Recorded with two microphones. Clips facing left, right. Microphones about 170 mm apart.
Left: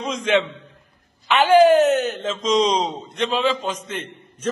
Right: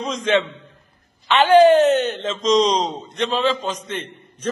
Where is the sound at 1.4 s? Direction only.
5° left (ahead or behind).